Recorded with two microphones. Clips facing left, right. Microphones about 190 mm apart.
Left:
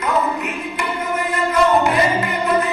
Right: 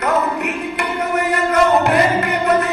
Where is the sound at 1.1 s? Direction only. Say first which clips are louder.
Right 3 dB; 70° right (ahead or behind).